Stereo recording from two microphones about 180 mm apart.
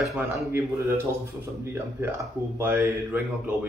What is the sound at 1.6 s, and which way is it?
Speech, 10° right (ahead or behind).